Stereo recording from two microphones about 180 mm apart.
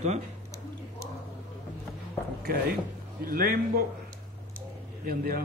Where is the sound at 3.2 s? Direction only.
55° right (ahead or behind).